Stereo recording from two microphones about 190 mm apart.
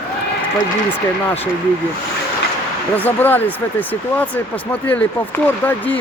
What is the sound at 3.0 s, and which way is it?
Speech, 10° left (ahead or behind).